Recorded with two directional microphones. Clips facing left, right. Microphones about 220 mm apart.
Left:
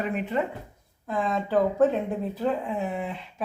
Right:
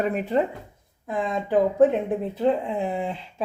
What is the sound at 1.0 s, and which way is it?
Speech, 20° right (ahead or behind).